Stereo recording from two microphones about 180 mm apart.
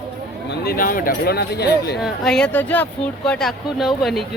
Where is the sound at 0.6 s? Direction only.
55° left (ahead or behind).